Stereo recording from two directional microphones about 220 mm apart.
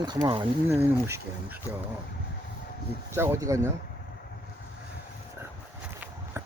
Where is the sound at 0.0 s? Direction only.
20° right (ahead or behind).